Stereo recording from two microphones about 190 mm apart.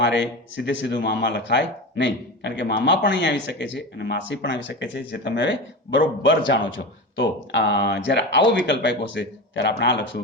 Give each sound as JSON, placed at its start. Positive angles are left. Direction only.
{"t": 0.0, "sound": "speech", "side_deg": 70}
{"t": 6.2, "sound": "speech", "side_deg": 80}